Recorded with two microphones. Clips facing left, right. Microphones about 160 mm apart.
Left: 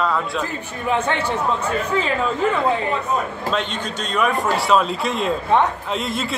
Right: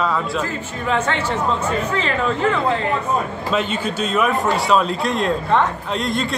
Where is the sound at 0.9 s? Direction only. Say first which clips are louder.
Even; 15° left (ahead or behind).